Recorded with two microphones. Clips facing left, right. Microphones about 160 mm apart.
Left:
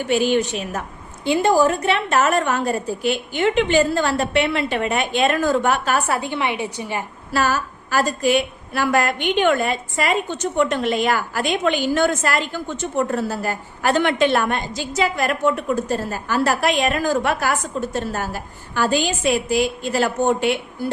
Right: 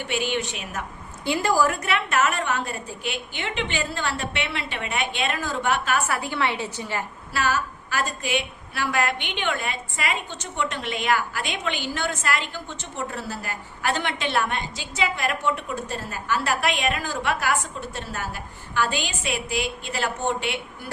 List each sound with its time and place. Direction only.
0.1 s a woman's voice: 40° left (ahead or behind)
1.2 s a woman's voice: 20° left (ahead or behind); by 6.1 s 40° left (ahead or behind)
6.1 s a woman's voice: 20° left (ahead or behind)
7.3 s a woman's voice: 40° left (ahead or behind)